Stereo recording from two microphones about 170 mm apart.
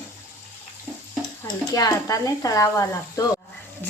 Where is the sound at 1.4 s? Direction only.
20° left (ahead or behind).